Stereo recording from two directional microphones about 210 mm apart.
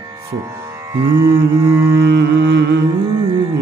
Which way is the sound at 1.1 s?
15° right (ahead or behind).